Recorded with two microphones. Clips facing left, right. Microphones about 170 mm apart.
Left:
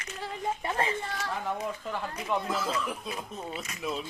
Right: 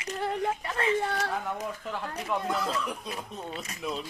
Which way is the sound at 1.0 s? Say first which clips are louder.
Right 6 dB; 65° right (ahead or behind).